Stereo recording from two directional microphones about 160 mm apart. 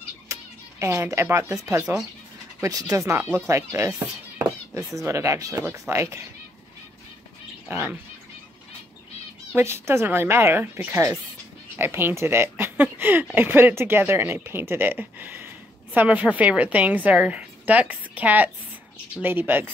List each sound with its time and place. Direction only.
0.3 s speech: 15° right (ahead or behind)
7.6 s speech: 10° right (ahead or behind)
9.6 s speech: 15° right (ahead or behind)